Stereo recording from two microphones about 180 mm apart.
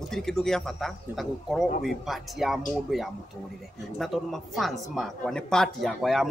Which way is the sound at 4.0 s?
Centre (ahead or behind).